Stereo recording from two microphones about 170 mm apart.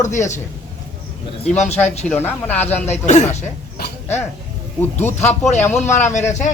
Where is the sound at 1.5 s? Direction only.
40° left (ahead or behind).